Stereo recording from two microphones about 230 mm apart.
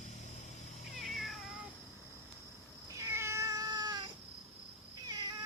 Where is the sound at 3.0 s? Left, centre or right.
Centre.